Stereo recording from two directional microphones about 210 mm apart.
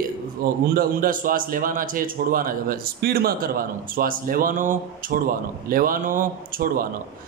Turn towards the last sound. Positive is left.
turn(degrees=-40)  # may be behind; listen again after turning